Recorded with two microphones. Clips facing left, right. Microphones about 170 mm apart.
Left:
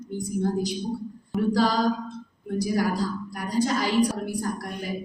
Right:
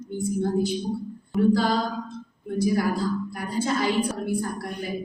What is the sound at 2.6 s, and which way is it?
A man's voice, 40° left (ahead or behind).